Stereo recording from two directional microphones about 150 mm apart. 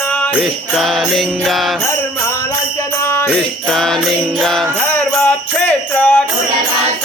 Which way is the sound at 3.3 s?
5° left (ahead or behind).